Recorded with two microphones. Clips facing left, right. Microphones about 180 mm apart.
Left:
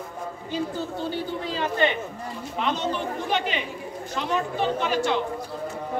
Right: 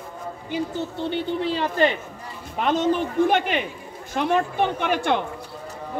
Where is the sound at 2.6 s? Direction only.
50° right (ahead or behind).